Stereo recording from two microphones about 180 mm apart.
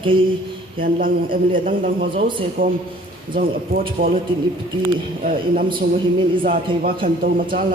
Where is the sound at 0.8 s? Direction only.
50° right (ahead or behind).